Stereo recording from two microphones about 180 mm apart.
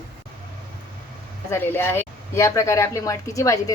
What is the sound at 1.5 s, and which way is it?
Speech, 15° left (ahead or behind).